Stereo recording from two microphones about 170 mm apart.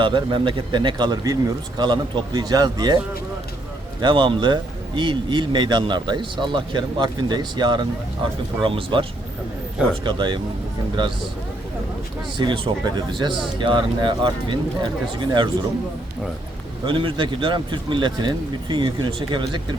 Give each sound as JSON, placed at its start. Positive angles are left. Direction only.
{"t": 0.0, "sound": "a man's voice", "side_deg": -30}
{"t": 4.0, "sound": "a man's voice", "side_deg": -30}
{"t": 12.4, "sound": "a man's voice", "side_deg": -30}
{"t": 16.8, "sound": "a man's voice", "side_deg": -30}